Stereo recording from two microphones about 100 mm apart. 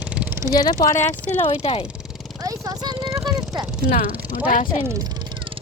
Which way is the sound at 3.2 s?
40° right (ahead or behind).